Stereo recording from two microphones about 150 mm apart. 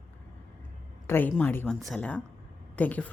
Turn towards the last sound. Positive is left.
turn(degrees=10)  # may be behind; listen again after turning